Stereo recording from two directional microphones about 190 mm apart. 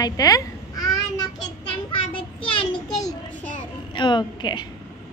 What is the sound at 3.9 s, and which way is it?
Speech, 25° left (ahead or behind).